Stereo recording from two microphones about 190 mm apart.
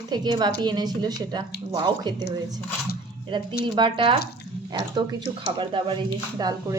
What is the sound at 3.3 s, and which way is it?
A woman's voice, 25° right (ahead or behind).